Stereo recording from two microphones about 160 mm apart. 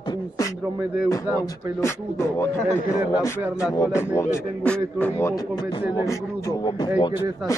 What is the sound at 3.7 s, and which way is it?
A man's voice, 20° left (ahead or behind).